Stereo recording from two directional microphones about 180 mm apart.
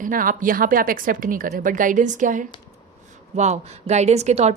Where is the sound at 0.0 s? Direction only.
50° right (ahead or behind).